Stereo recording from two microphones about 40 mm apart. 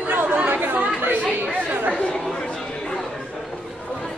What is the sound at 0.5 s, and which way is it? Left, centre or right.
Chatter, right.